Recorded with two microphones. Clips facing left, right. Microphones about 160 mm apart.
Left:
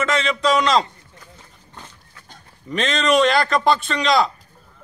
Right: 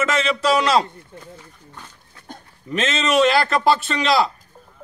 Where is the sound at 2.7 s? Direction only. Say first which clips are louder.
Left 2 dB; 5° right (ahead or behind).